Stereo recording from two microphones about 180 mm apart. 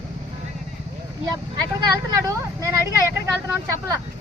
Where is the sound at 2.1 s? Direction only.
15° right (ahead or behind).